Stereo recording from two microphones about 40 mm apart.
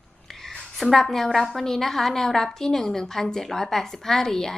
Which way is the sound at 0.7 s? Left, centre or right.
Centre.